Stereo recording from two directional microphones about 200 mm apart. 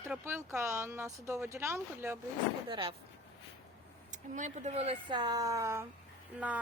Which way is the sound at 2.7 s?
25° right (ahead or behind).